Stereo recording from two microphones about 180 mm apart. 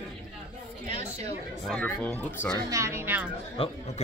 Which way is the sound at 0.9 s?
40° right (ahead or behind).